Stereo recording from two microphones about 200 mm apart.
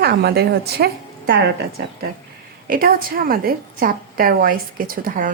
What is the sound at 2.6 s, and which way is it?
A woman's voice, 45° right (ahead or behind).